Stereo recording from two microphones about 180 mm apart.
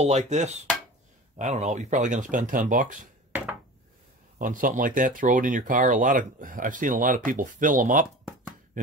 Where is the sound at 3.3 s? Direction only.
10° right (ahead or behind).